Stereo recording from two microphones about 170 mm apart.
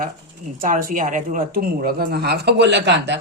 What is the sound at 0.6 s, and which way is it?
A woman's voice, 55° right (ahead or behind).